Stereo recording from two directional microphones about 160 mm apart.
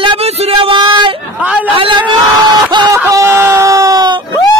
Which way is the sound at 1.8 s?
30° right (ahead or behind).